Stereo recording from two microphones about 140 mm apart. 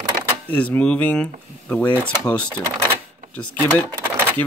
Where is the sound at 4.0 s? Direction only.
15° right (ahead or behind).